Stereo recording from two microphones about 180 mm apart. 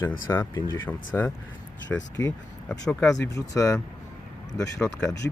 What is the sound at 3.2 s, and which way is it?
Speech, 15° left (ahead or behind).